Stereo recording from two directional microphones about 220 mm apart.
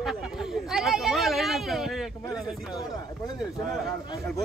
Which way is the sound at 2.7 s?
15° left (ahead or behind).